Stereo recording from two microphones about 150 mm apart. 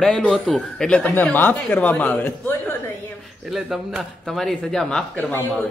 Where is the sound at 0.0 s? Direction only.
5° left (ahead or behind).